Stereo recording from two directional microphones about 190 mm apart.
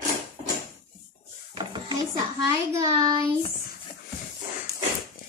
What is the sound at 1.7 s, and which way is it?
Dishes, 25° right (ahead or behind).